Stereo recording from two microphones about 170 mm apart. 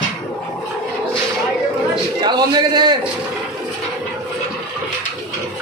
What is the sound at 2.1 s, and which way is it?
Speech, 25° right (ahead or behind).